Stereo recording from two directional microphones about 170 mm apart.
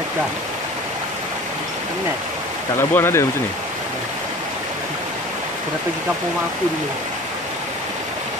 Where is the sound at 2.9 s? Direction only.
15° left (ahead or behind).